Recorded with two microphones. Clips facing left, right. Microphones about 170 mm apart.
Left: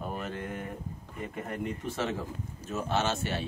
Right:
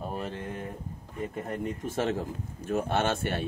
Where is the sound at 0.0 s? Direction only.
35° right (ahead or behind).